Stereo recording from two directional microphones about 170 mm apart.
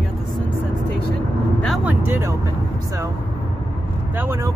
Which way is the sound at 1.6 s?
Centre (ahead or behind).